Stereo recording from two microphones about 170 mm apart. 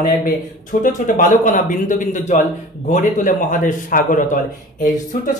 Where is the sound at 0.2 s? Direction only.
55° left (ahead or behind).